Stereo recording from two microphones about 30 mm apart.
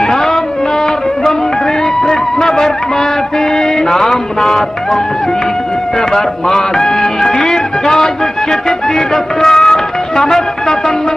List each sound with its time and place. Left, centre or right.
0.0 s music: centre
2.0 s music: centre
5.9 s speech: centre